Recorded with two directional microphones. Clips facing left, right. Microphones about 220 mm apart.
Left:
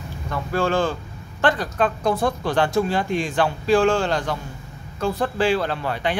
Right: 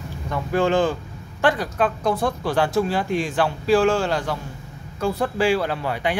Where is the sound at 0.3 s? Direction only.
15° right (ahead or behind).